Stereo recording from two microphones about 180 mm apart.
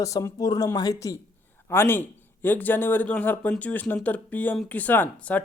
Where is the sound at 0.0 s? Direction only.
20° left (ahead or behind).